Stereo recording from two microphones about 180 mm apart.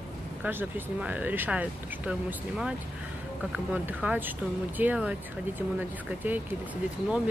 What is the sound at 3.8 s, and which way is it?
Speech, 10° right (ahead or behind).